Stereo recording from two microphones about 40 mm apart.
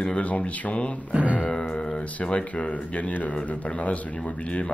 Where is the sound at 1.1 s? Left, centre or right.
Right.